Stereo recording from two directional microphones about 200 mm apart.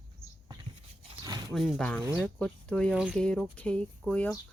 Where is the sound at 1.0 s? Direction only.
20° right (ahead or behind).